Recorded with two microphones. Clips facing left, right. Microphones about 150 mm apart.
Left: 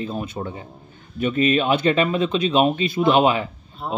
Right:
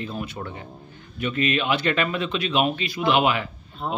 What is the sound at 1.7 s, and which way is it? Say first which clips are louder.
A man's voice: left 5 dB; 25° left (ahead or behind).